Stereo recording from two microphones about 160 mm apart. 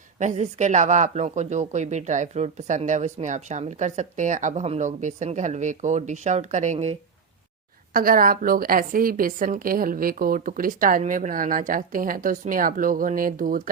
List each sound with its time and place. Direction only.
0.2 s speech: 50° right (ahead or behind)
7.9 s a woman's voice: 60° right (ahead or behind)